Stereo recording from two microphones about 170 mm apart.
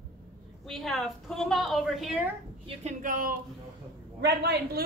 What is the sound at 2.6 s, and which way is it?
Speech, 45° right (ahead or behind).